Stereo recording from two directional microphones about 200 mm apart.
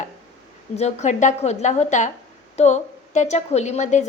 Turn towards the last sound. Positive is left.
turn(degrees=35)  # may be behind; listen again after turning